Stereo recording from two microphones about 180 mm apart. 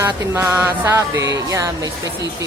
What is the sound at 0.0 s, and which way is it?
A woman's voice, 15° right (ahead or behind).